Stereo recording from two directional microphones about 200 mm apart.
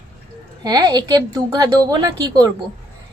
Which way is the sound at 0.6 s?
20° right (ahead or behind).